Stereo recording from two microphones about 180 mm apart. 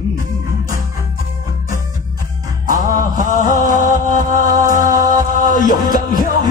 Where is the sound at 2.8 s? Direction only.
45° left (ahead or behind).